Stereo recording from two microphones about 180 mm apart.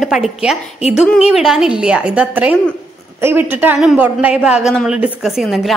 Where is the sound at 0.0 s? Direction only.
Centre (ahead or behind).